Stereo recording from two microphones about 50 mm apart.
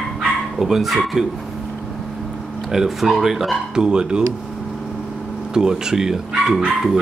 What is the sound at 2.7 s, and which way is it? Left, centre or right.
Speech, centre.